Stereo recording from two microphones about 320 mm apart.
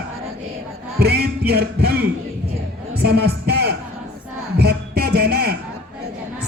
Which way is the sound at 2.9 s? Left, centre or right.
Right.